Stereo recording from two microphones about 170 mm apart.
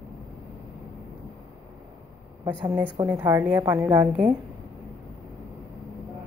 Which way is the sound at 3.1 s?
15° right (ahead or behind).